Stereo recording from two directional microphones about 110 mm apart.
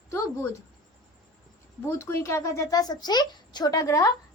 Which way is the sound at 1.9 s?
25° left (ahead or behind).